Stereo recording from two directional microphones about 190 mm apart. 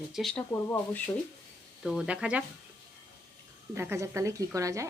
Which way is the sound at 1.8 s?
Centre (ahead or behind).